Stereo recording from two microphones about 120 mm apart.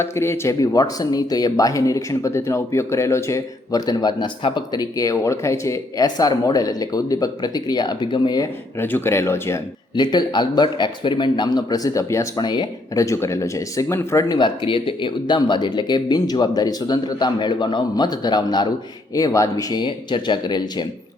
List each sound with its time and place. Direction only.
0.0 s speech: 20° left (ahead or behind); by 8.4 s 40° left (ahead or behind)
8.8 s speech: 15° left (ahead or behind)
9.9 s speech: 40° left (ahead or behind)
12.4 s speech: 35° left (ahead or behind)
14.3 s speech: 40° left (ahead or behind)
19.8 s speech: 40° left (ahead or behind)